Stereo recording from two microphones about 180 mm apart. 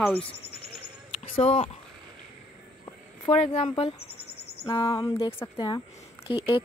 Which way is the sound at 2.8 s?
30° left (ahead or behind).